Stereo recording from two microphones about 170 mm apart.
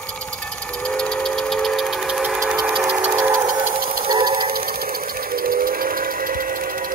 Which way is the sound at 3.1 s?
15° right (ahead or behind).